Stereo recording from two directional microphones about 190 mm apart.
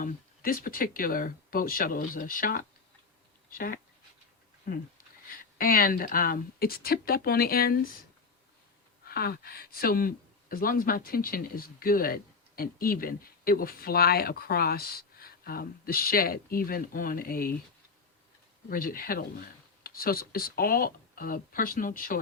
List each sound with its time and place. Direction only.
0.0 s speech: 50° left (ahead or behind)
9.0 s speech: 55° left (ahead or behind)
18.7 s speech: 50° left (ahead or behind)